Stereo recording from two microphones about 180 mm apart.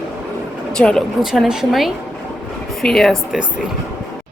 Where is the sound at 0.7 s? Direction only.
5° left (ahead or behind).